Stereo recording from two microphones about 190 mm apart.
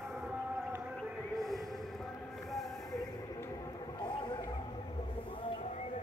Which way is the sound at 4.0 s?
25° left (ahead or behind).